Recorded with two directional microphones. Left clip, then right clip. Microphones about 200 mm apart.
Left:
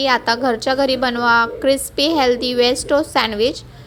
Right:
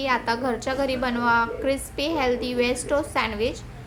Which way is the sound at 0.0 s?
35° left (ahead or behind).